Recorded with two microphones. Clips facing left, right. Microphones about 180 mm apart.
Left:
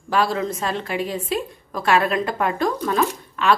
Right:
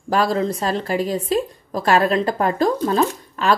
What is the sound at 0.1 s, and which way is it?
A woman's voice, 40° right (ahead or behind).